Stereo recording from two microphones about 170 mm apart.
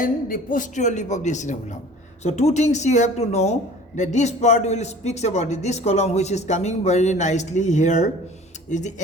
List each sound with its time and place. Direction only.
0.0 s speech: 55° left (ahead or behind)